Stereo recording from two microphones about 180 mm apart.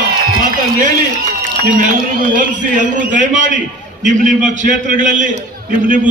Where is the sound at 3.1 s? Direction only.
45° right (ahead or behind).